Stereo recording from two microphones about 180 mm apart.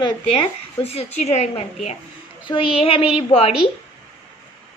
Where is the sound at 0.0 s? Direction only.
30° left (ahead or behind).